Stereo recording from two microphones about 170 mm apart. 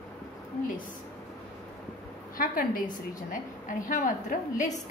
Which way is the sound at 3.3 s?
50° left (ahead or behind).